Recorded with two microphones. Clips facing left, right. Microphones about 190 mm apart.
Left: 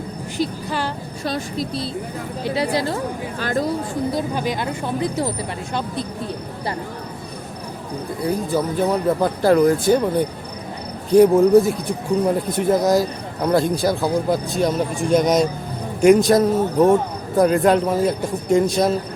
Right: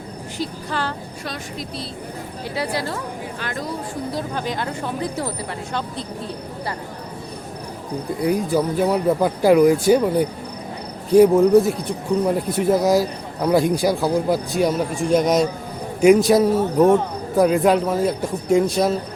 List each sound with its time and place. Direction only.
1.2 s speech: 30° left (ahead or behind)
2.6 s speech: 20° left (ahead or behind)
3.4 s speech: 35° left (ahead or behind)
4.1 s speech: 10° left (ahead or behind)
8.2 s speech: 15° right (ahead or behind)